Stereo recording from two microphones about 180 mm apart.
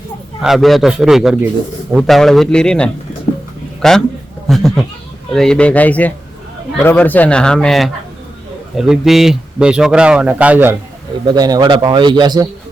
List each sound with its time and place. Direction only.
0.4 s a man's voice: centre (ahead or behind)
11.3 s speech: 20° right (ahead or behind)